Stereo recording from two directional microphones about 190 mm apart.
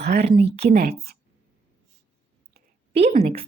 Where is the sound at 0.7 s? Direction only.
55° right (ahead or behind).